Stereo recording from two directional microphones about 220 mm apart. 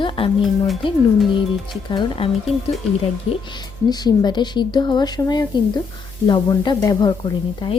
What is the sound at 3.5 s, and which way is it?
A woman's voice, 20° left (ahead or behind).